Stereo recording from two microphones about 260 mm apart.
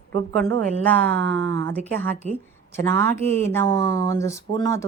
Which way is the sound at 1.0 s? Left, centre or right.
Right.